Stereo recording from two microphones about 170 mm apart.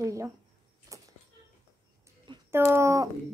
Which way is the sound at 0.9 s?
20° right (ahead or behind).